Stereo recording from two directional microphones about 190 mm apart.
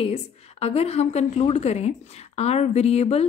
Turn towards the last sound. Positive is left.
turn(degrees=35)  # may be behind; listen again after turning